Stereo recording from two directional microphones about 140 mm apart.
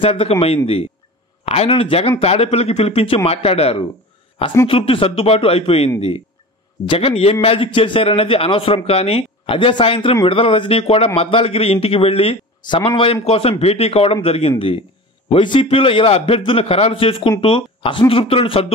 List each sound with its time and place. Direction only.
0.0 s a man's voice: 45° left (ahead or behind)